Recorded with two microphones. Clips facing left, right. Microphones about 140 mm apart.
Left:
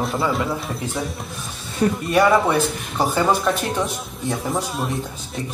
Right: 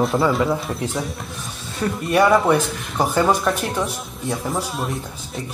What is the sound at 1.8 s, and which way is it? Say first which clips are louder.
Speech: left 4 dB; 35° left (ahead or behind).